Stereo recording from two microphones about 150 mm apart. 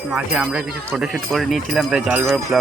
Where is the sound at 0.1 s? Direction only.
Centre (ahead or behind).